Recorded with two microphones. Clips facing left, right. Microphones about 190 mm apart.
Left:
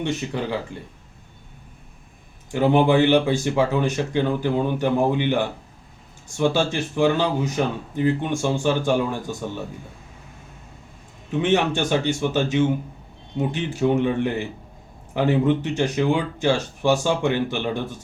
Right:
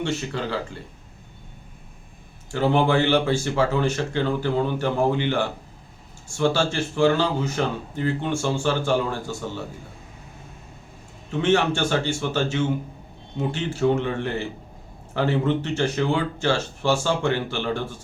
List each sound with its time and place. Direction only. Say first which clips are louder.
0.0 s speech: left 1 dB; 15° left (ahead or behind)
2.5 s speech: left 3 dB; 15° left (ahead or behind)
11.3 s speech: even; 15° left (ahead or behind)